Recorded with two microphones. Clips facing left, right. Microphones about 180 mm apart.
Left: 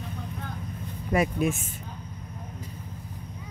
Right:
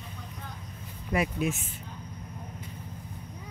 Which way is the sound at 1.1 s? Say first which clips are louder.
Left 4 dB; 50° left (ahead or behind).